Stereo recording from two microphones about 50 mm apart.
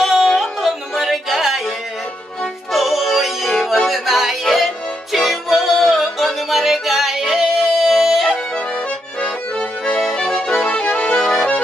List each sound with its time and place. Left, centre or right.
0.0 s a sound: centre
0.3 s music: centre
2.7 s music: centre
9.2 s accordion: centre
10.6 s accordion: left